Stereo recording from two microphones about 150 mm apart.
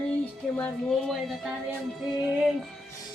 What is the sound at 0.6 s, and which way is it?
Speech, centre (ahead or behind).